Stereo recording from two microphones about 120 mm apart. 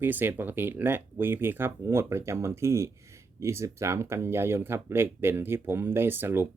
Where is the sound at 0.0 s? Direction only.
15° right (ahead or behind).